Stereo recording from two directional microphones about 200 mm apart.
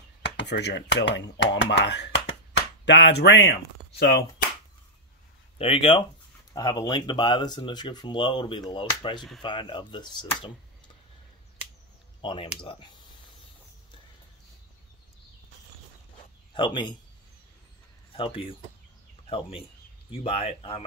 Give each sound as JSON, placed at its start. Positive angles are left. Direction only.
{"t": 0.4, "sound": "speech", "side_deg": 60}
{"t": 4.0, "sound": "a sound", "side_deg": 55}
{"t": 5.6, "sound": "speech", "side_deg": 25}
{"t": 12.2, "sound": "speech", "side_deg": 25}
{"t": 16.5, "sound": "speech", "side_deg": 25}
{"t": 18.1, "sound": "speech", "side_deg": 25}